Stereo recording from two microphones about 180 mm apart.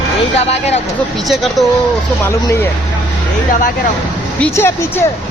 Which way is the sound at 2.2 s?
15° left (ahead or behind).